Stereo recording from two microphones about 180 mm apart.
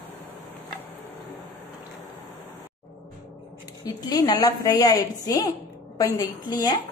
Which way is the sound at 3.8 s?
20° left (ahead or behind).